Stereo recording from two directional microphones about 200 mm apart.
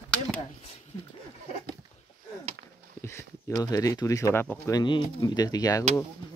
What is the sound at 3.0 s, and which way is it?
Speech, 15° left (ahead or behind).